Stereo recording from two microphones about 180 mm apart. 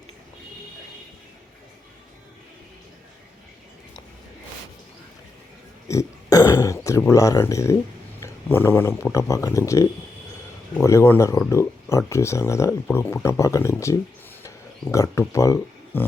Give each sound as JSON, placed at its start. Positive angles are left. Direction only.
{"t": 5.9, "sound": "speech", "side_deg": 15}